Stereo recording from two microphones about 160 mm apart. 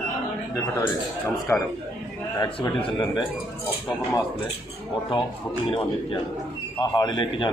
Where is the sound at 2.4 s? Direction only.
25° left (ahead or behind).